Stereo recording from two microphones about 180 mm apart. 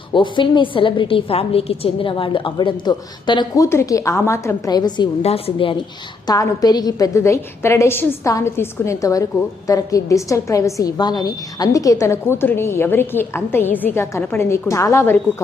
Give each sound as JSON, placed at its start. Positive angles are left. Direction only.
{"t": 0.1, "sound": "a woman's voice", "side_deg": 25}
{"t": 6.2, "sound": "a woman's voice", "side_deg": 20}